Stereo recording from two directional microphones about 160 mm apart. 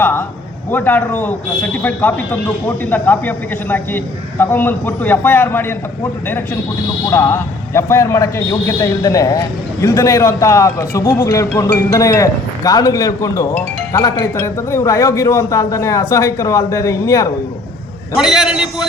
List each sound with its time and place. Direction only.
0.0 s a man's voice: 15° left (ahead or behind)
18.2 s a man's voice: 5° right (ahead or behind)